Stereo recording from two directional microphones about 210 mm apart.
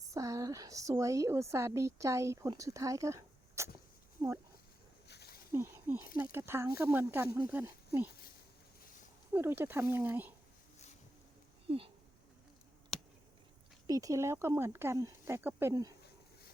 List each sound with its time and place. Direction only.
0.0 s speech: 15° right (ahead or behind)
5.0 s snake: 50° left (ahead or behind)
5.5 s speech: 10° right (ahead or behind)
9.3 s speech: 10° right (ahead or behind)
11.7 s speech: 25° right (ahead or behind)
13.8 s speech: 15° right (ahead or behind)